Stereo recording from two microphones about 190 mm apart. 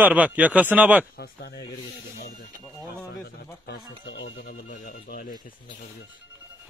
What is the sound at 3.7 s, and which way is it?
Speech, 70° left (ahead or behind).